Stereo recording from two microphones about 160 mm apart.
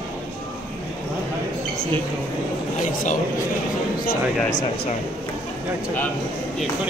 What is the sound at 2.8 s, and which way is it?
Speech, 55° left (ahead or behind).